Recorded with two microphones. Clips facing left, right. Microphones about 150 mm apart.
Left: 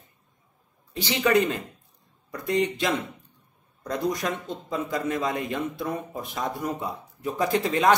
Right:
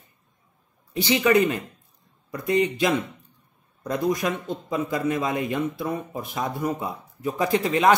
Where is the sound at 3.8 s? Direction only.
10° right (ahead or behind).